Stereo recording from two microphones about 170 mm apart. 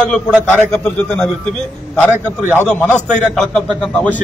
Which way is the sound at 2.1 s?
15° right (ahead or behind).